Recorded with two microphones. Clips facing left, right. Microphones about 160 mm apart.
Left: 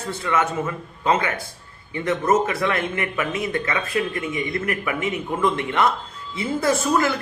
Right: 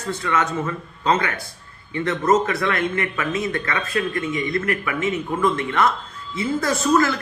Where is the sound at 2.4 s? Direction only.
20° left (ahead or behind).